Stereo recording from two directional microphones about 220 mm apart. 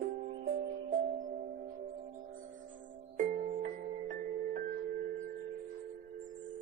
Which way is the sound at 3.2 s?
35° right (ahead or behind).